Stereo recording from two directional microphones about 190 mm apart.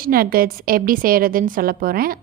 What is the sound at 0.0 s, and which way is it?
A woman's voice, 50° right (ahead or behind).